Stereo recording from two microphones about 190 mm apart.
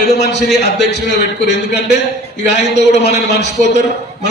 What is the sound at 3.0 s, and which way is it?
Speech, 65° left (ahead or behind).